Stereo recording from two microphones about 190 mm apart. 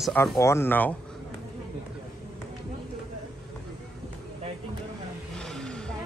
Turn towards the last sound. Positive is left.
turn(degrees=5)  # may be behind; listen again after turning